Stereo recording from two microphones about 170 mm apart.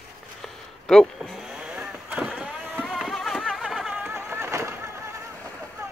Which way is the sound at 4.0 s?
15° right (ahead or behind).